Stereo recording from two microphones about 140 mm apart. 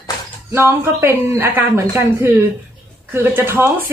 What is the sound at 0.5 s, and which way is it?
Speech, 15° right (ahead or behind).